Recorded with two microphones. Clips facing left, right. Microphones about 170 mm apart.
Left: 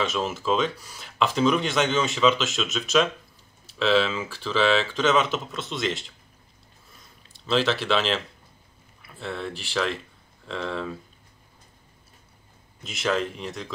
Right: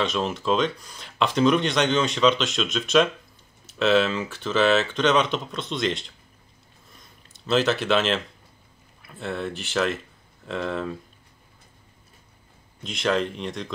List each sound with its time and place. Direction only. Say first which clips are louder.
0.0 s speech: right 1 dB; 5° left (ahead or behind)
7.0 s a sound: right 1 dB; centre (ahead or behind)
9.0 s speech: right 2 dB; centre (ahead or behind)
12.8 s speech: right 2 dB; 5° left (ahead or behind)